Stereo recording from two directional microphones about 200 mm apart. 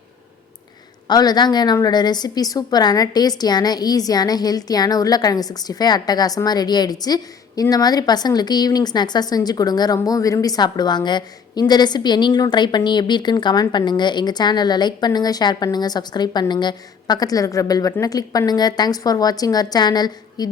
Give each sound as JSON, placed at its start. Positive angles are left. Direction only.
{"t": 1.0, "sound": "a woman's voice", "side_deg": 20}